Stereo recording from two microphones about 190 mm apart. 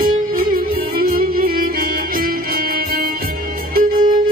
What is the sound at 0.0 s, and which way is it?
Music, 50° right (ahead or behind).